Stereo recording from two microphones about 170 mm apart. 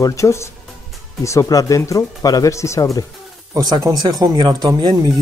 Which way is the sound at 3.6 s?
20° right (ahead or behind).